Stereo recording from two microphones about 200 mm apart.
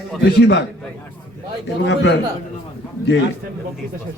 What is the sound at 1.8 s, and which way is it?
Speech, 60° left (ahead or behind).